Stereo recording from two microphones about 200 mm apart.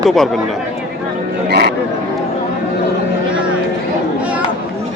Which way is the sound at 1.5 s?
55° right (ahead or behind).